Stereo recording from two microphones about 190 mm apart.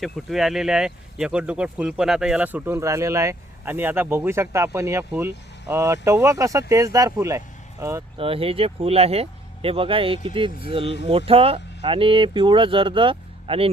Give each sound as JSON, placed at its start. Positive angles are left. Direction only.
{"t": 0.0, "sound": "speech", "side_deg": 0}
{"t": 8.2, "sound": "speech", "side_deg": -30}